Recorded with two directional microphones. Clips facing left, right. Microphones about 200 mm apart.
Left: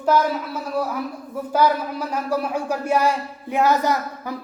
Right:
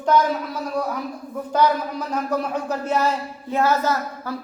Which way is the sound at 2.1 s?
10° left (ahead or behind).